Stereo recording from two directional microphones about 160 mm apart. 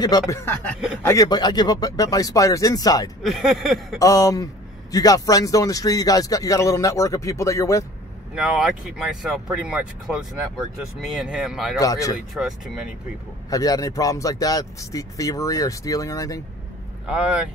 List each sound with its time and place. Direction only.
0.1 s speech: 25° left (ahead or behind)
3.3 s speech: centre (ahead or behind)
4.0 s speech: 20° left (ahead or behind)
8.4 s speech: centre (ahead or behind)
11.8 s speech: 20° left (ahead or behind)
12.4 s speech: centre (ahead or behind)
13.5 s speech: 20° left (ahead or behind)
17.0 s speech: 5° right (ahead or behind)